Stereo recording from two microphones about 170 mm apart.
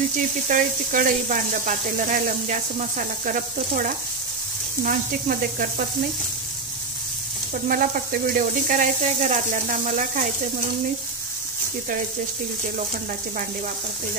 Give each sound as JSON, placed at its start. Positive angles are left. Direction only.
{"t": 0.5, "sound": "speech", "side_deg": -50}
{"t": 7.5, "sound": "speech", "side_deg": -55}